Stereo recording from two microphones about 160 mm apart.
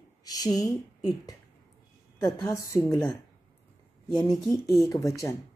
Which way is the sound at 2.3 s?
25° left (ahead or behind).